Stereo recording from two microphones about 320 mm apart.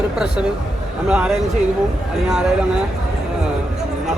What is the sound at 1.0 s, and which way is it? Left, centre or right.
A woman's voice, centre.